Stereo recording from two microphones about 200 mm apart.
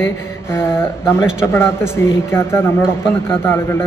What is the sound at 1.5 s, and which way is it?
Speech, 10° left (ahead or behind).